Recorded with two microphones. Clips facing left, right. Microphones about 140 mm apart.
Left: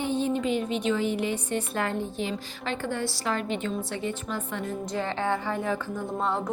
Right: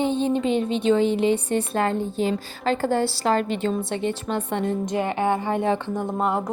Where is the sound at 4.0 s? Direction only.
70° right (ahead or behind).